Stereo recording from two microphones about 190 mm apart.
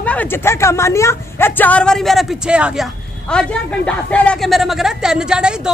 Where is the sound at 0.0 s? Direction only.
10° left (ahead or behind).